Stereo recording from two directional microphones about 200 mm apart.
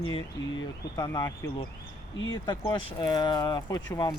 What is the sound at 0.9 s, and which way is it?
Speech, 20° left (ahead or behind).